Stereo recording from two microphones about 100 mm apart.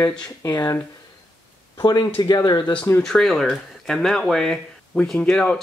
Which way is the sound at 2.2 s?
45° left (ahead or behind).